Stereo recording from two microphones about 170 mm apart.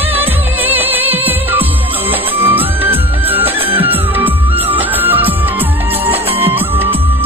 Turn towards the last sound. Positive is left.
turn(degrees=-35)  # may be behind; listen again after turning